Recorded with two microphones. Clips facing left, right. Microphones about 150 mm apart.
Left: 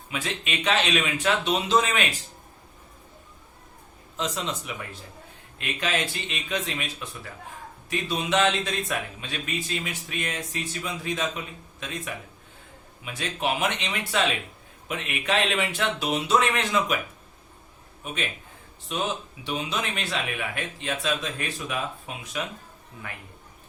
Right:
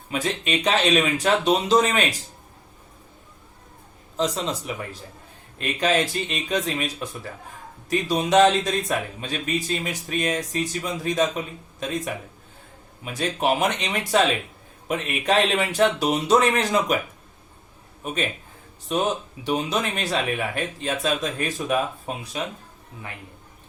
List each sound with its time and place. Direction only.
0.1 s speech: 40° right (ahead or behind)
4.2 s speech: 35° right (ahead or behind)
13.1 s speech: 40° right (ahead or behind)
18.0 s a man's voice: 40° right (ahead or behind)
19.5 s speech: 40° right (ahead or behind)